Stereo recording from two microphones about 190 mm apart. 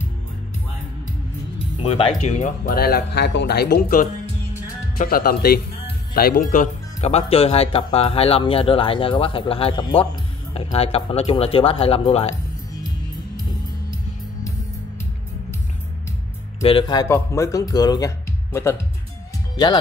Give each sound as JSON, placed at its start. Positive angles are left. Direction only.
{"t": 1.8, "sound": "speech", "side_deg": 30}
{"t": 16.6, "sound": "speech", "side_deg": 25}